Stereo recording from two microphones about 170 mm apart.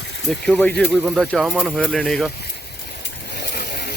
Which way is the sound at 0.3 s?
5° left (ahead or behind).